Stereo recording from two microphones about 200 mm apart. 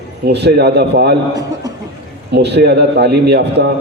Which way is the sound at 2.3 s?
55° right (ahead or behind).